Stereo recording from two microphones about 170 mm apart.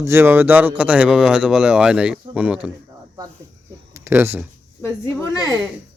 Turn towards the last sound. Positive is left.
turn(degrees=15)  # may be behind; listen again after turning